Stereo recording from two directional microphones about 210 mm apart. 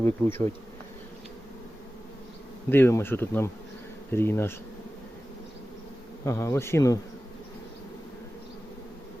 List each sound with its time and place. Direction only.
0.0 s bee: 10° left (ahead or behind)
2.6 s bee: 10° left (ahead or behind)
6.2 s bee: 15° left (ahead or behind)